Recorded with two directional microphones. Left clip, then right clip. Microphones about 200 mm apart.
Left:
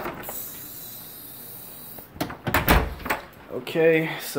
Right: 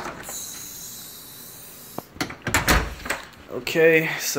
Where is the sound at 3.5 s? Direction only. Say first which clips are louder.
Right 3 dB; 5° right (ahead or behind).